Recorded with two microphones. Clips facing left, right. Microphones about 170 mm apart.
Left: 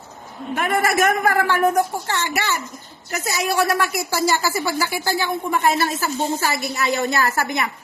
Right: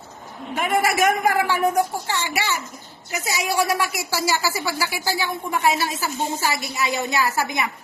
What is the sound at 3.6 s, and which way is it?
Speech, 10° right (ahead or behind).